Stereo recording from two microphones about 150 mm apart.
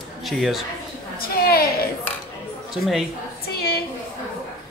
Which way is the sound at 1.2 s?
90° left.